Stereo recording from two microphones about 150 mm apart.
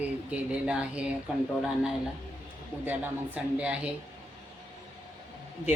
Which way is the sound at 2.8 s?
10° right (ahead or behind).